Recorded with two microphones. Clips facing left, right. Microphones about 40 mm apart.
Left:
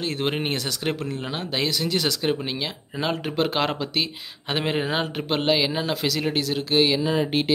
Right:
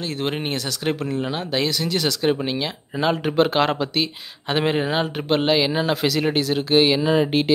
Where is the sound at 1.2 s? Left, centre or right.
Centre.